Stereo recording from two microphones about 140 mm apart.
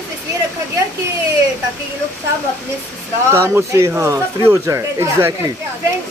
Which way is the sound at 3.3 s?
20° right (ahead or behind).